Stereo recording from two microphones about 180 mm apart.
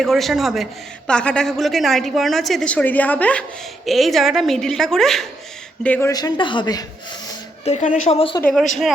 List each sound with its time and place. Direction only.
0.0 s a man's voice: centre (ahead or behind); by 6.8 s 25° left (ahead or behind)
7.6 s a woman's voice: 40° left (ahead or behind)